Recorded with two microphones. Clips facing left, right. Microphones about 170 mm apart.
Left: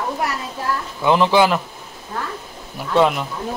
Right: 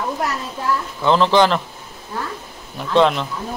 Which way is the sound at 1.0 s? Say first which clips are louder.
Even; 15° left (ahead or behind).